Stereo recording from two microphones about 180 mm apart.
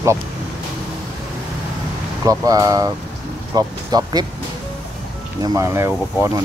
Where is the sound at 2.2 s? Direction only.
20° right (ahead or behind).